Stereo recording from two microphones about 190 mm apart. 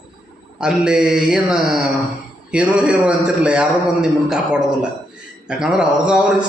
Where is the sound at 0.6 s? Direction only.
5° right (ahead or behind).